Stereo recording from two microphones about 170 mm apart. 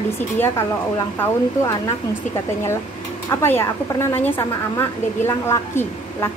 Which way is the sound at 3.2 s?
15° left (ahead or behind).